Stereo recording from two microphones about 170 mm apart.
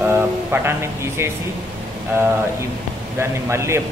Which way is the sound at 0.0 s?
15° right (ahead or behind).